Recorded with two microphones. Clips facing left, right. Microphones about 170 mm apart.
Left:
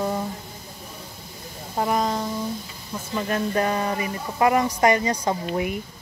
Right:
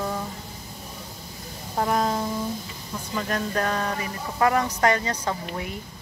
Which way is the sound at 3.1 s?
15° left (ahead or behind).